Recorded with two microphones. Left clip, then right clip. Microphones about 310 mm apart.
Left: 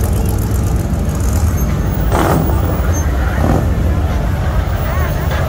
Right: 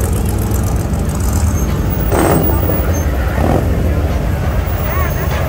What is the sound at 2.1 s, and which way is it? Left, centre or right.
Vehicle, right.